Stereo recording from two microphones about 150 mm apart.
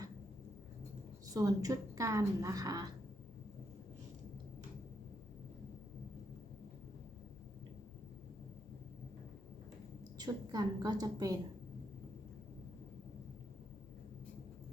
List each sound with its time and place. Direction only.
1.3 s a woman's voice: 20° right (ahead or behind)
10.2 s a woman's voice: 25° right (ahead or behind)